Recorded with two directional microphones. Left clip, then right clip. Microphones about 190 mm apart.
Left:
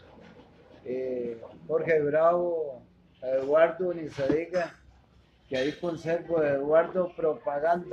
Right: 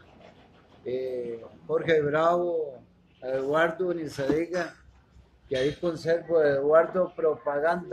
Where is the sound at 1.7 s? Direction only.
55° right (ahead or behind).